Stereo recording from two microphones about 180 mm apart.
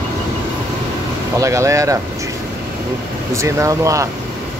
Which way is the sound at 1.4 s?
15° right (ahead or behind).